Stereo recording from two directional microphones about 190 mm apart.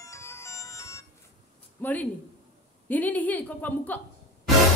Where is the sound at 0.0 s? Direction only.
15° left (ahead or behind).